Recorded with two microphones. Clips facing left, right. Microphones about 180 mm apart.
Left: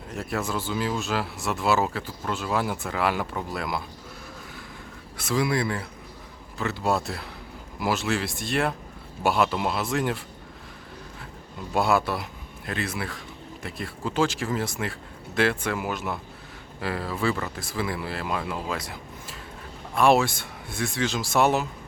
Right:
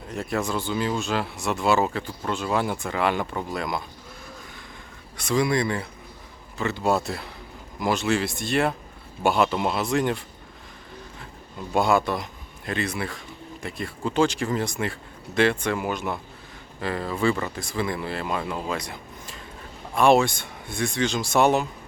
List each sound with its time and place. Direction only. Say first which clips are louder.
0.1 s speech: right 2 dB; centre (ahead or behind)
5.1 s speech: right 2 dB; 5° left (ahead or behind)
11.7 s speech: right 2 dB; 5° left (ahead or behind)